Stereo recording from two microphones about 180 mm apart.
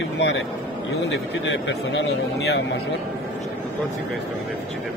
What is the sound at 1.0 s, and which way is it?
Speech, 90° left.